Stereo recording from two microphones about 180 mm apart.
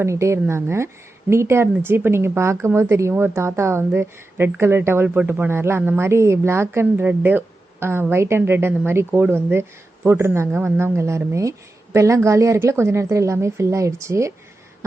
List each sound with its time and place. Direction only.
0.0 s speech: 15° right (ahead or behind)